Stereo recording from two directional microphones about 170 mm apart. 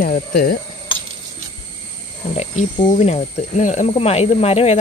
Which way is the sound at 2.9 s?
40° left (ahead or behind).